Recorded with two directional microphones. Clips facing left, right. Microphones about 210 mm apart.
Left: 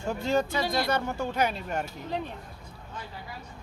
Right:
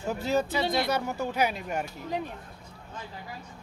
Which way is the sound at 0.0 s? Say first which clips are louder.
Even; 5° right (ahead or behind).